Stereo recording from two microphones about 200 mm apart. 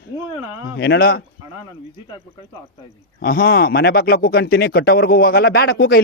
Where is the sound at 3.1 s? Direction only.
45° left (ahead or behind).